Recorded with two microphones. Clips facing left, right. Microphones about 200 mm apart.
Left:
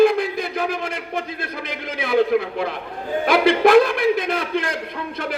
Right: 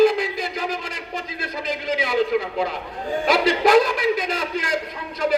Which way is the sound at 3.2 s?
55° left (ahead or behind).